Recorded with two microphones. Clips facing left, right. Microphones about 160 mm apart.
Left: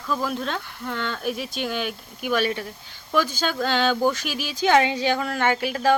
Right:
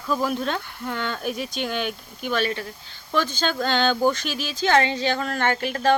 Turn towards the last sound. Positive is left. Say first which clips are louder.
# even
turn(degrees=10)  # may be behind; listen again after turning